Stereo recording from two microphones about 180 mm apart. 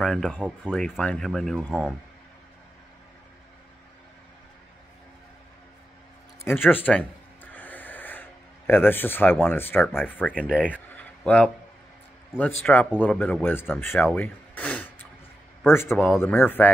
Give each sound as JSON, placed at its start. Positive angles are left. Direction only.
{"t": 0.0, "sound": "speech", "side_deg": 0}
{"t": 6.7, "sound": "speech", "side_deg": 10}
{"t": 7.5, "sound": "a sound", "side_deg": 10}
{"t": 10.3, "sound": "speech", "side_deg": -5}
{"t": 10.7, "sound": "a sound", "side_deg": 10}
{"t": 12.7, "sound": "speech", "side_deg": 5}